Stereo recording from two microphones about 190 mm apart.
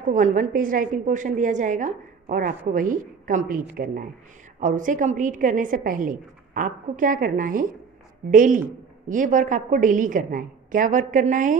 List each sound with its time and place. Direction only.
0.1 s a woman's voice: 45° right (ahead or behind)